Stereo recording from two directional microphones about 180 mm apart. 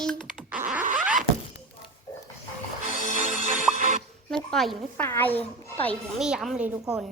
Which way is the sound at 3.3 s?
45° left (ahead or behind).